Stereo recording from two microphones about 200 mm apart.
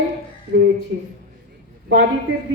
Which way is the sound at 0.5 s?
60° right (ahead or behind).